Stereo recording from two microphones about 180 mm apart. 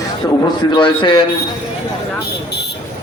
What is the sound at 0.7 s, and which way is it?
Speech, 25° left (ahead or behind).